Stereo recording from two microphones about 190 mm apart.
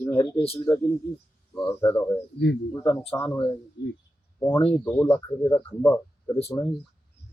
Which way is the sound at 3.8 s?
65° left (ahead or behind).